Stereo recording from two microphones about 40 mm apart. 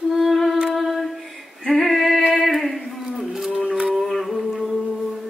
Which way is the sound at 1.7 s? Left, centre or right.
Centre.